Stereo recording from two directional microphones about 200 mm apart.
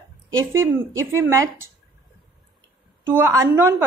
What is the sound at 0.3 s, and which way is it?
Speech, 15° right (ahead or behind).